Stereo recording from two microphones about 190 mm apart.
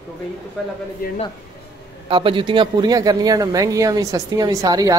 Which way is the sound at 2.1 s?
25° right (ahead or behind).